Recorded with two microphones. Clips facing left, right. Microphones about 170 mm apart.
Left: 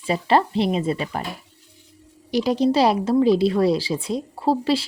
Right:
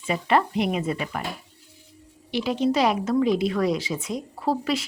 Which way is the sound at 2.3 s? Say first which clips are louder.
Left 4 dB; 40° left (ahead or behind).